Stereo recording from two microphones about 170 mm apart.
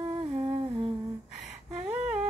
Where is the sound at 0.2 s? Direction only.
30° right (ahead or behind).